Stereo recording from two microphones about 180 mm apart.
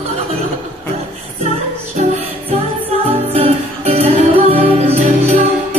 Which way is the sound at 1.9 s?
40° right (ahead or behind).